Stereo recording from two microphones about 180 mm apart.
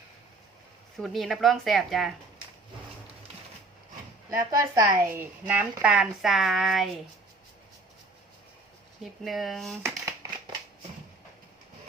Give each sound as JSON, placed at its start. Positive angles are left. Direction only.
{"t": 0.9, "sound": "a woman's voice", "side_deg": 0}
{"t": 4.5, "sound": "a woman's voice", "side_deg": -20}
{"t": 9.2, "sound": "a woman's voice", "side_deg": 0}
{"t": 9.8, "sound": "crumpling", "side_deg": -15}